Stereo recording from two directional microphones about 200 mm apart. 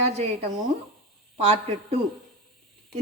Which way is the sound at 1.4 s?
30° right (ahead or behind).